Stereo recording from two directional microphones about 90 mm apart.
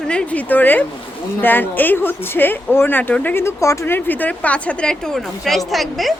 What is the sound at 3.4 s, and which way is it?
Speech, 35° left (ahead or behind).